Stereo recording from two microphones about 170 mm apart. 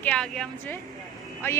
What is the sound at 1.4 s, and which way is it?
Speech, 15° left (ahead or behind).